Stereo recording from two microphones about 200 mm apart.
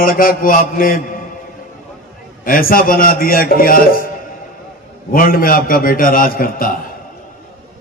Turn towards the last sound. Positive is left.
turn(degrees=45)  # may be behind; listen again after turning